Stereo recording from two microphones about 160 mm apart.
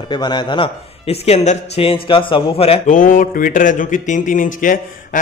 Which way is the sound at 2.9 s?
55° left (ahead or behind).